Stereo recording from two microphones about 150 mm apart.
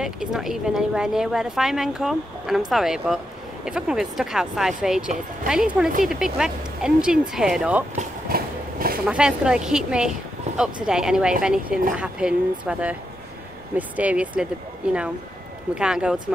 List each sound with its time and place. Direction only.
0.0 s a woman's voice: 5° right (ahead or behind)
8.3 s vehicle: 80° right
9.0 s a woman's voice: 5° right (ahead or behind)